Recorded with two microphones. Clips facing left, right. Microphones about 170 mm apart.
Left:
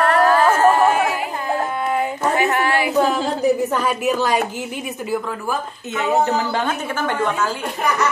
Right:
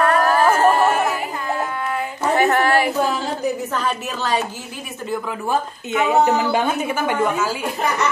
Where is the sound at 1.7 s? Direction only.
20° left (ahead or behind).